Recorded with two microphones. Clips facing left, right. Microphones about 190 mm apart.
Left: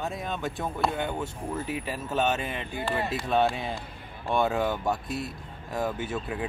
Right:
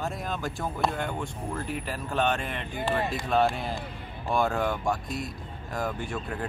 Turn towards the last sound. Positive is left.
turn(degrees=5)  # may be behind; listen again after turning